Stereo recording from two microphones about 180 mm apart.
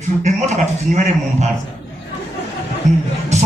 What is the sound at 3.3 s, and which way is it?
Music, 40° right (ahead or behind).